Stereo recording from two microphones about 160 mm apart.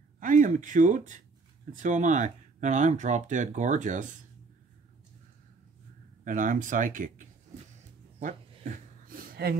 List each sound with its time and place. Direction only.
0.2 s speech: 55° right (ahead or behind)
6.2 s speech: 55° right (ahead or behind)
8.2 s a sound: 55° right (ahead or behind)